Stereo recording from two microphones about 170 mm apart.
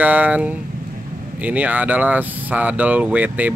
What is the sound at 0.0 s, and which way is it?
Speech, 10° right (ahead or behind).